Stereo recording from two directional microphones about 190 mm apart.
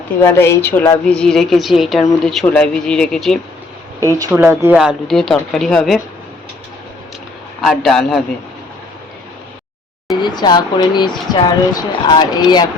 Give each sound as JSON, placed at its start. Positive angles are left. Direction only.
{"t": 0.2, "sound": "a woman's voice", "side_deg": 15}
{"t": 4.3, "sound": "a woman's voice", "side_deg": -10}
{"t": 7.6, "sound": "a woman's voice", "side_deg": 0}
{"t": 10.2, "sound": "speech", "side_deg": 25}